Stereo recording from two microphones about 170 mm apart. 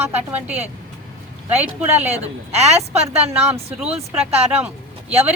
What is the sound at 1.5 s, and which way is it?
A woman's voice, 40° right (ahead or behind).